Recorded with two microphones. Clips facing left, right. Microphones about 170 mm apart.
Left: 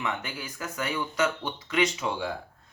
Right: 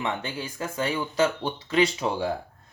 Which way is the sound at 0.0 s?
30° right (ahead or behind).